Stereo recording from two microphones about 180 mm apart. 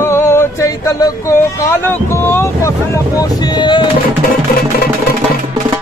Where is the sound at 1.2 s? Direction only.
15° left (ahead or behind).